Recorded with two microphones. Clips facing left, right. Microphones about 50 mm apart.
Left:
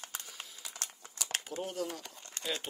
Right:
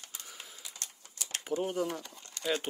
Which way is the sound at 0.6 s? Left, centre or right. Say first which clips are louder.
Left 2 dB; left.